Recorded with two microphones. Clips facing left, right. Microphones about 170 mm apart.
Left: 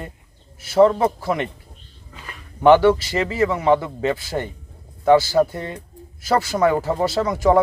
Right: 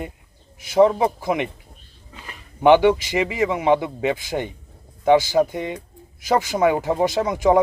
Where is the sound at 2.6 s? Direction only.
15° right (ahead or behind).